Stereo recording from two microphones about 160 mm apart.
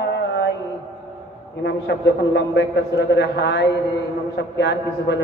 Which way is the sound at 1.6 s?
90° left.